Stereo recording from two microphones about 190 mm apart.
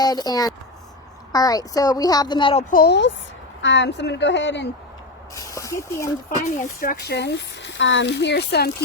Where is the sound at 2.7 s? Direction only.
55° left (ahead or behind).